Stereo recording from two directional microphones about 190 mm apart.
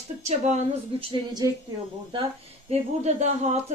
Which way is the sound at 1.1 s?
20° right (ahead or behind).